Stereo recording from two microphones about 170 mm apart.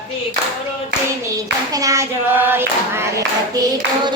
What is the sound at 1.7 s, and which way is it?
Clapping, 20° right (ahead or behind).